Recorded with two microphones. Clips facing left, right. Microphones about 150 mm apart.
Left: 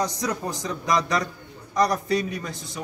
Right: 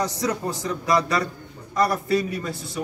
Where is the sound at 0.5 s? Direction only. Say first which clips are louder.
Right 2 dB; 15° left (ahead or behind).